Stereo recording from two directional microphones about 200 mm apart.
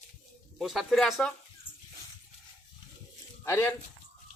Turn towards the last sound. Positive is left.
turn(degrees=10)  # may be behind; listen again after turning